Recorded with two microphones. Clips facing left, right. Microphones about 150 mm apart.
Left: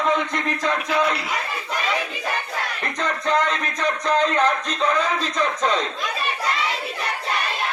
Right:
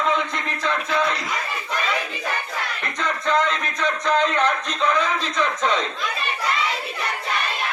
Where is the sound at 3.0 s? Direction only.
35° left (ahead or behind).